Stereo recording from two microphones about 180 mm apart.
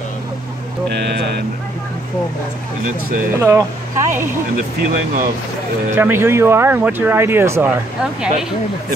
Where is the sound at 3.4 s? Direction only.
15° right (ahead or behind).